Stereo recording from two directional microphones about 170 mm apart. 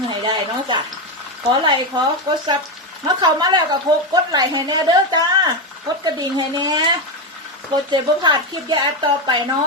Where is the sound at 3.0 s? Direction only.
25° right (ahead or behind).